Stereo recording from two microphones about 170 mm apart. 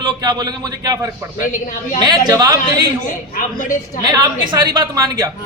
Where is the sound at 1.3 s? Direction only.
50° left (ahead or behind).